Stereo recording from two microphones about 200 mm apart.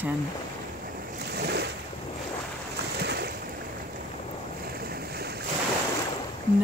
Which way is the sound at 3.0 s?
55° right (ahead or behind).